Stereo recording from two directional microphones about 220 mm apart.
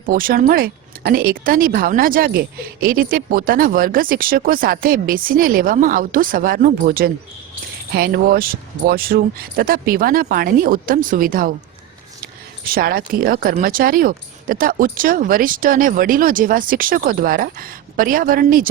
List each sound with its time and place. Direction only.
0.0 s speech: 40° right (ahead or behind)
12.6 s speech: 40° right (ahead or behind)